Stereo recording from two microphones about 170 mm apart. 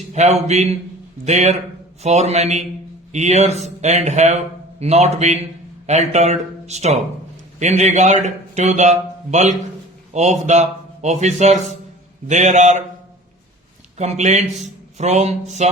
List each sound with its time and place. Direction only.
0.1 s a man's voice: 40° right (ahead or behind)
14.0 s speech: 45° right (ahead or behind)